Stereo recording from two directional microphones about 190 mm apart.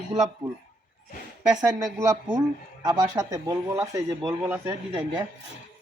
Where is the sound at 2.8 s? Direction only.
20° right (ahead or behind).